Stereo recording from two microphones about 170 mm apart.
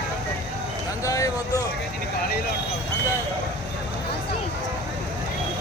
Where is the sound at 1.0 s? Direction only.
20° left (ahead or behind).